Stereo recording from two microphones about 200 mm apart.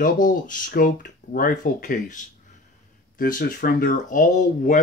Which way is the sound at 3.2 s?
45° left (ahead or behind).